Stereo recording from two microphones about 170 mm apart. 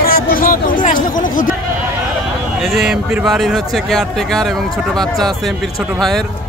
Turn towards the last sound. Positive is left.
turn(degrees=0)  # may be behind; listen again after turning